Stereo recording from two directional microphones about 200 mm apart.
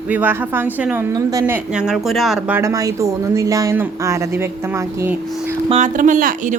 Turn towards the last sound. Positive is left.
turn(degrees=-40)  # may be behind; listen again after turning